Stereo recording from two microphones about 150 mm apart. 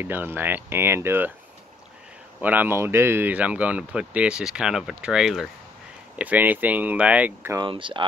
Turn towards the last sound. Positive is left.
turn(degrees=-35)  # may be behind; listen again after turning